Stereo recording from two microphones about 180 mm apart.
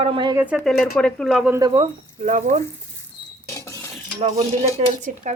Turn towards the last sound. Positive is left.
turn(degrees=-40)  # may be behind; listen again after turning